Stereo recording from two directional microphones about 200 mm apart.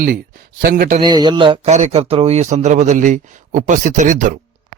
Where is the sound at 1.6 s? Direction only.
35° right (ahead or behind).